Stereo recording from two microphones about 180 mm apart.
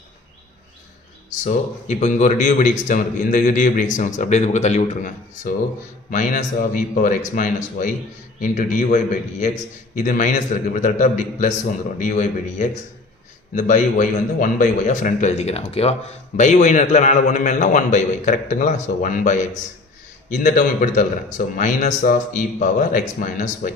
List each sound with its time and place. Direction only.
1.4 s a man's voice: 40° left (ahead or behind)